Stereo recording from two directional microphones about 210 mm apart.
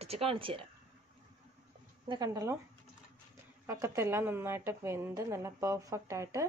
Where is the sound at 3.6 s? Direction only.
15° right (ahead or behind).